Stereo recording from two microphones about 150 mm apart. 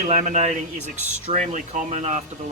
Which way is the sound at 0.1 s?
55° right (ahead or behind).